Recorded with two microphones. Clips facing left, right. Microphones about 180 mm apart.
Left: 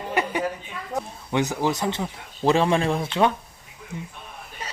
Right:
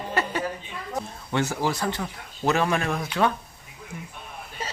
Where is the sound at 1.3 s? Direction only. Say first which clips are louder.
Left 2 dB; 15° left (ahead or behind).